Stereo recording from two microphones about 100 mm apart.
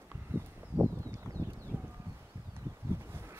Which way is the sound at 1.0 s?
35° right (ahead or behind).